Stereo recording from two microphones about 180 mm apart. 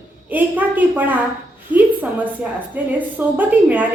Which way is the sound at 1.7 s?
25° left (ahead or behind).